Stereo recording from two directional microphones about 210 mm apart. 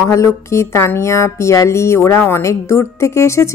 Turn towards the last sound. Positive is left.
turn(degrees=15)  # may be behind; listen again after turning